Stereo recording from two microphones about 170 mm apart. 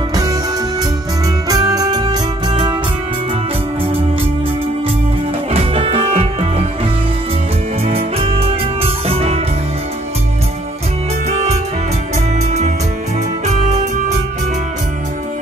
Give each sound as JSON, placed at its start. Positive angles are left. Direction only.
{"t": 0.1, "sound": "music", "side_deg": -20}
{"t": 1.5, "sound": "music", "side_deg": -20}
{"t": 5.5, "sound": "music", "side_deg": -35}
{"t": 7.8, "sound": "music", "side_deg": -35}
{"t": 11.2, "sound": "music", "side_deg": -45}